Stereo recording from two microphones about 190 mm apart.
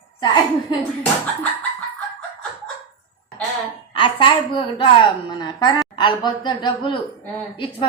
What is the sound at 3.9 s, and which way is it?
A woman's voice, 25° left (ahead or behind).